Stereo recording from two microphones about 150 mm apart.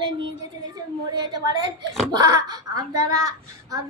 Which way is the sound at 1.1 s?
30° right (ahead or behind).